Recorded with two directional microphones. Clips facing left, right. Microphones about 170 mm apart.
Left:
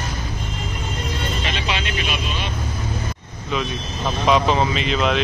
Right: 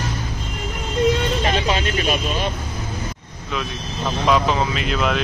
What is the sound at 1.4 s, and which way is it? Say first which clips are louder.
Vehicle: right 5 dB; 40° right (ahead or behind).